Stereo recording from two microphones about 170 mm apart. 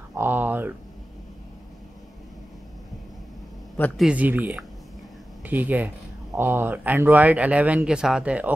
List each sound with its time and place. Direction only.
0.1 s a sound: 10° right (ahead or behind)
3.7 s a man's voice: 10° left (ahead or behind)
4.0 s speech: 10° right (ahead or behind)